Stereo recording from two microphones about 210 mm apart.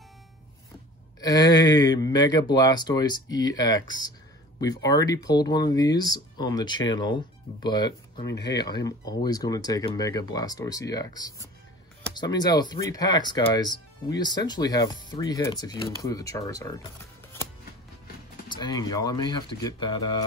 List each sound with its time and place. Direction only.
1.2 s speech: 20° left (ahead or behind)
18.5 s speech: 20° left (ahead or behind)